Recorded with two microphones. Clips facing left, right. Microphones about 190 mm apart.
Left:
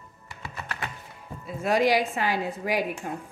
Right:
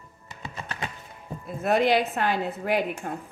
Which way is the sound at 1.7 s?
55° right (ahead or behind).